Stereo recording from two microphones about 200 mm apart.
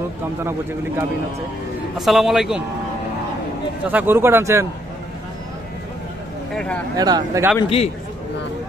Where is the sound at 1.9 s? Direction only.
Centre (ahead or behind).